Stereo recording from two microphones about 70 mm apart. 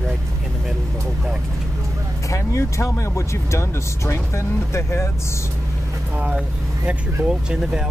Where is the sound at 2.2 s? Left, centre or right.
Left.